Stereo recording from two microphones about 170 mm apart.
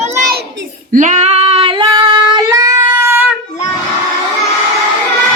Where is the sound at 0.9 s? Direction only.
45° right (ahead or behind); by 3.3 s 10° right (ahead or behind).